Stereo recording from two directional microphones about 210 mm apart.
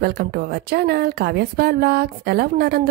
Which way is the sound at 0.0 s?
50° right (ahead or behind).